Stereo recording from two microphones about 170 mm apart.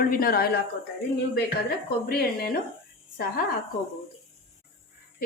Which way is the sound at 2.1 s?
65° left (ahead or behind).